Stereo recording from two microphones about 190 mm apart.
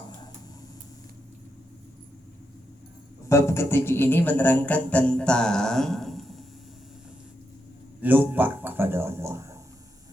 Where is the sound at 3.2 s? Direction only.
15° left (ahead or behind).